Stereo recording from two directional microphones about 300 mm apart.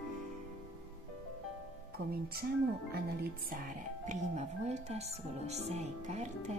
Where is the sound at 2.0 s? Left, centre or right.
Right.